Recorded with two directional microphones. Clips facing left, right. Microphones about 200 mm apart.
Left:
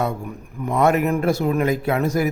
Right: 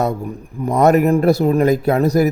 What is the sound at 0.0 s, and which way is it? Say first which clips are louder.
A man's voice: right 4 dB; 35° right (ahead or behind).